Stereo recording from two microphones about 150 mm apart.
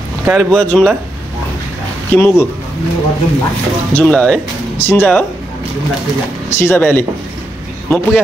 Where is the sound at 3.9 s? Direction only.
5° left (ahead or behind).